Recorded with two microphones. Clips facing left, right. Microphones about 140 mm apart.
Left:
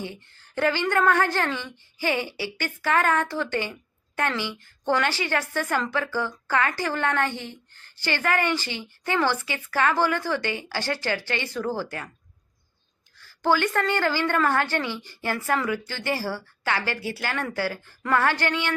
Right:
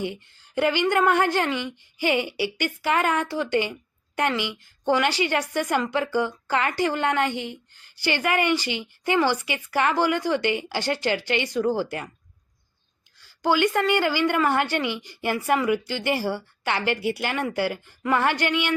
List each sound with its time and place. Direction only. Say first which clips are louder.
0.0 s a woman's voice: right 5 dB; 15° right (ahead or behind)
13.1 s a woman's voice: right 1 dB; 15° right (ahead or behind)